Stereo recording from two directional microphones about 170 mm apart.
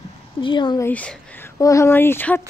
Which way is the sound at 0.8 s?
10° left (ahead or behind).